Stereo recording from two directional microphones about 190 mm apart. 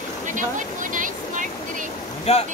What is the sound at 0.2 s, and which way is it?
Vehicle, 40° right (ahead or behind).